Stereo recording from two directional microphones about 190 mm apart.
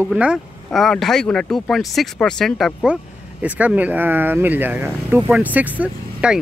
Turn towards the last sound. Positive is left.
turn(degrees=-5)  # may be behind; listen again after turning